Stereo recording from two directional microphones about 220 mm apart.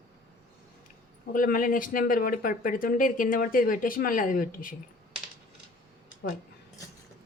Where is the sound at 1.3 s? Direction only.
40° left (ahead or behind).